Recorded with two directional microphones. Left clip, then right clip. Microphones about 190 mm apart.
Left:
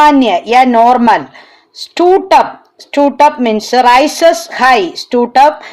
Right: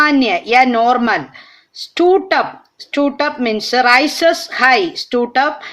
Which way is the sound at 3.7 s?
15° left (ahead or behind).